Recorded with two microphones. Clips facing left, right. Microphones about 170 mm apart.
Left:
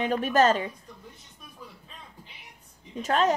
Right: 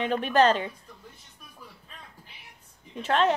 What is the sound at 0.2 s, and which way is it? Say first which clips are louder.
Speech: right 1 dB; 45° left (ahead or behind).